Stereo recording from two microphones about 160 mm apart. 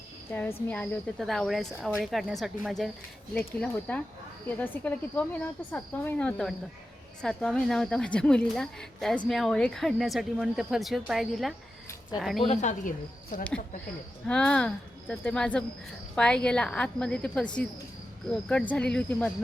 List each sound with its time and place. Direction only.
0.3 s speech: 10° left (ahead or behind)
12.4 s speech: 40° left (ahead or behind)
14.3 s speech: 5° left (ahead or behind)